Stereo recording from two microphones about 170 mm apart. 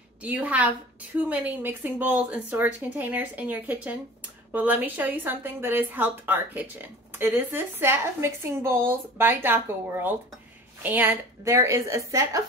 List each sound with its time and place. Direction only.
0.2 s speech: 10° right (ahead or behind)